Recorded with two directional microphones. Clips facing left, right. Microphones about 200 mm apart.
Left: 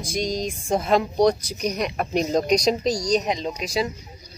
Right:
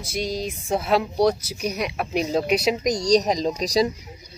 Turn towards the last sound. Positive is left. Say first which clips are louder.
# right 4 dB
turn(degrees=-35)  # may be behind; listen again after turning